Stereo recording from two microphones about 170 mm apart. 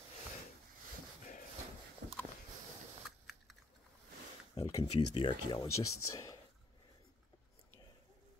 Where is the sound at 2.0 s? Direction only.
75° right (ahead or behind).